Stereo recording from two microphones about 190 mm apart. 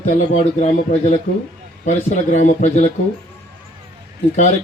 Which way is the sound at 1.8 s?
40° left (ahead or behind).